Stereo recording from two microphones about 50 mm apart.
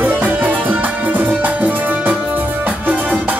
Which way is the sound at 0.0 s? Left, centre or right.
Right.